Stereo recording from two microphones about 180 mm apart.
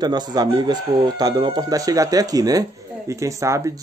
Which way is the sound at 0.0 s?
20° right (ahead or behind).